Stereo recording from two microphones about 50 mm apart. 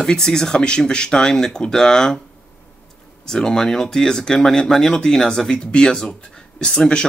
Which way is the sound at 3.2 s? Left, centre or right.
Centre.